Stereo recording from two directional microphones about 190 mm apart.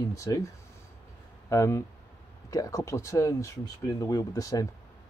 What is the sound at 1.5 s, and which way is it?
Speech, 15° left (ahead or behind).